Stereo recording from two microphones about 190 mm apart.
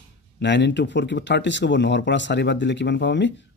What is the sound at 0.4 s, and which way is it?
Speech, 65° left (ahead or behind).